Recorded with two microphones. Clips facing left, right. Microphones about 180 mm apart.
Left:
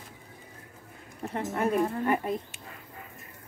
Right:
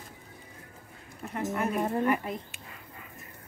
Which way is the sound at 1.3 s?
30° left (ahead or behind).